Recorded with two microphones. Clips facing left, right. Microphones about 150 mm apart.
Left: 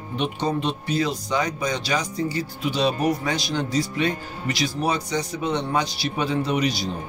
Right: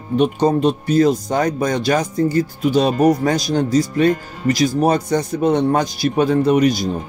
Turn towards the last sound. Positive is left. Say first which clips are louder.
# right 9 dB
turn(degrees=-50)  # may be behind; listen again after turning